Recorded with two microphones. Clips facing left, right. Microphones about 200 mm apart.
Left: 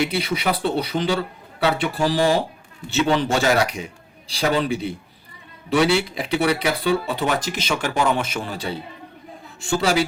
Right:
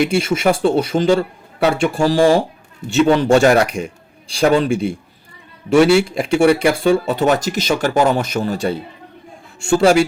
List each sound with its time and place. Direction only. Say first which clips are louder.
0.0 s speech: right 7 dB; 50° right (ahead or behind)